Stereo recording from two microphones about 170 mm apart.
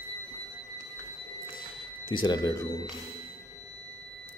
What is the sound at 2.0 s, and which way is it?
Speech, 30° left (ahead or behind).